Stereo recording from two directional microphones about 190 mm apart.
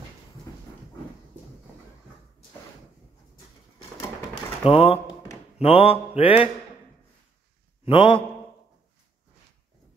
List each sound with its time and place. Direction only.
4.6 s speech: 30° left (ahead or behind)
5.6 s mantra: 30° left (ahead or behind)
7.8 s a man's voice: 30° left (ahead or behind)